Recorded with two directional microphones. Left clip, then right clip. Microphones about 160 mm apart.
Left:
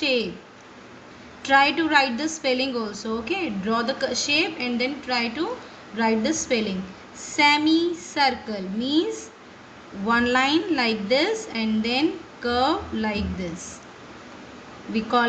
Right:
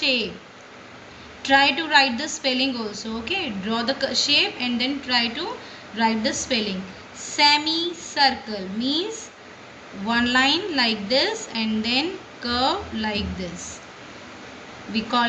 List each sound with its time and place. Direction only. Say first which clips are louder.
0.0 s a woman's voice: right 1 dB; 50° left (ahead or behind)
1.4 s a woman's voice: even; 50° left (ahead or behind)
14.9 s a woman's voice: left 1 dB; 50° left (ahead or behind)